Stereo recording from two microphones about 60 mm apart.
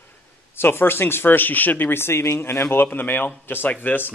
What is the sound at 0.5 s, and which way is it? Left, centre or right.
Speech, left.